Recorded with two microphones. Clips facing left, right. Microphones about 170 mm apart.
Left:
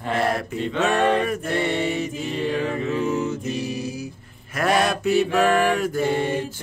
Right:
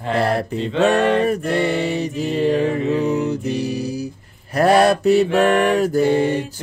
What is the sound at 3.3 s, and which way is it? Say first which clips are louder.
Music: right 5 dB; 35° right (ahead or behind).